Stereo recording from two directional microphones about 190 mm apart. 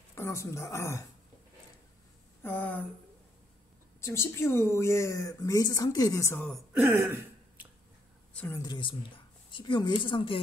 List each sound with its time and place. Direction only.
0.1 s speech: 15° left (ahead or behind)
2.4 s speech: 10° left (ahead or behind)
4.0 s speech: 15° left (ahead or behind)
6.8 s throat clearing: 10° right (ahead or behind)
8.3 s a woman's voice: 10° left (ahead or behind); by 10.4 s 25° left (ahead or behind)